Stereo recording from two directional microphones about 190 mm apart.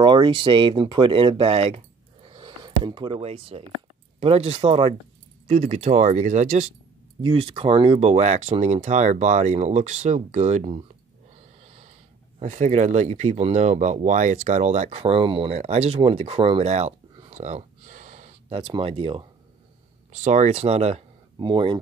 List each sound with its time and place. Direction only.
0.0 s speech: 25° right (ahead or behind)
7.2 s speech: 25° right (ahead or behind)
12.4 s speech: 35° right (ahead or behind)